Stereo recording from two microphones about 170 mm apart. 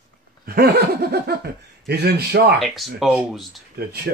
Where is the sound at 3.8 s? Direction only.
70° right (ahead or behind).